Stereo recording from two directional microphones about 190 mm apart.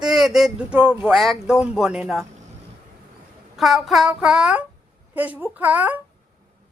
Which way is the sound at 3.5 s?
Centre (ahead or behind).